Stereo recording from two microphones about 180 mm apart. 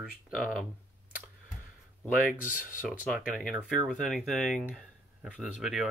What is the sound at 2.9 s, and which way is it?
Speech, centre (ahead or behind).